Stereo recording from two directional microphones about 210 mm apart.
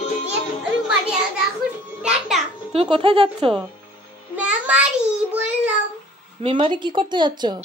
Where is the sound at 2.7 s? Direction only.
25° right (ahead or behind).